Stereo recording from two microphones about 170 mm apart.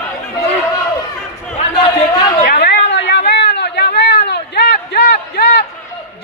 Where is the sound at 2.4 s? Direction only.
70° left (ahead or behind).